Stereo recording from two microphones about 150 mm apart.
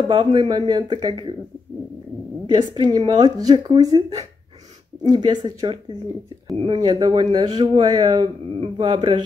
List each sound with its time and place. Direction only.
0.1 s speech: 30° right (ahead or behind)
2.4 s speech: 30° right (ahead or behind)